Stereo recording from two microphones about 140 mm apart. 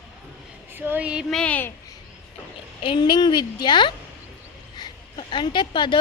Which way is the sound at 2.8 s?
35° left (ahead or behind).